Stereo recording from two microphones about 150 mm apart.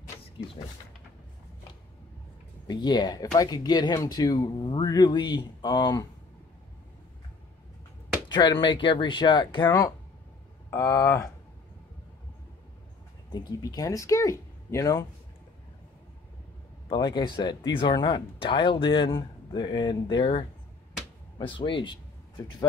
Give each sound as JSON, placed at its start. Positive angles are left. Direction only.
{"t": 2.7, "sound": "speech", "side_deg": 30}
{"t": 8.3, "sound": "speech", "side_deg": 30}
{"t": 13.3, "sound": "speech", "side_deg": 25}
{"t": 16.9, "sound": "speech", "side_deg": 30}